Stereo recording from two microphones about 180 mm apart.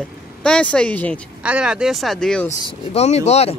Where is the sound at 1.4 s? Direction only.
5° right (ahead or behind).